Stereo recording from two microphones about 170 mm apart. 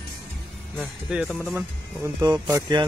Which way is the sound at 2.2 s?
20° right (ahead or behind).